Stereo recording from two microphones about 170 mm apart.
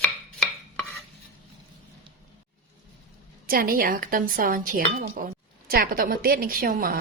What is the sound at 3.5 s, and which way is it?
Speech, 60° right (ahead or behind).